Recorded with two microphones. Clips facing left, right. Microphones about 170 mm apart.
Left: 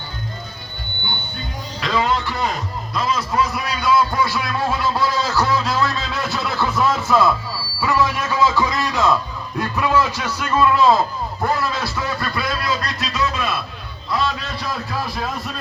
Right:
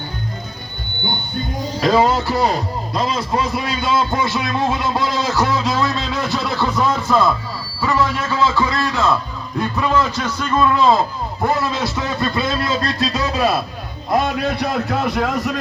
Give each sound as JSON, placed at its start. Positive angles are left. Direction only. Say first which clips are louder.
{"t": 1.8, "sound": "a man's voice", "louder": "right 5 dB", "side_deg": -40}
{"t": 6.7, "sound": "speech", "louder": "even", "side_deg": 5}
{"t": 11.4, "sound": "a sound", "louder": "right 3 dB", "side_deg": -20}
{"t": 14.1, "sound": "a man's voice", "louder": "right 5 dB", "side_deg": -55}